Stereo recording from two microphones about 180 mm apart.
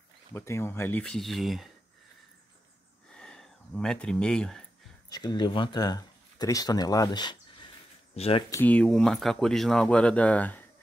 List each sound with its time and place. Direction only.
0.3 s speech: 15° left (ahead or behind)
3.2 s a sound: 5° left (ahead or behind)
5.1 s speech: 25° left (ahead or behind)
8.5 s speech: 10° left (ahead or behind)